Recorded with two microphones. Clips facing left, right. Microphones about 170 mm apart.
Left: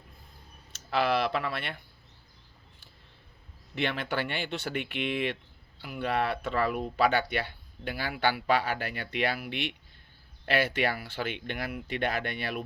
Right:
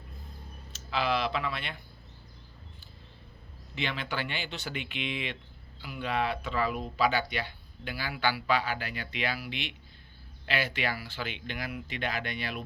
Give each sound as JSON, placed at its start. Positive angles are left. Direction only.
{"t": 0.9, "sound": "speech", "side_deg": 60}
{"t": 3.8, "sound": "speech", "side_deg": 60}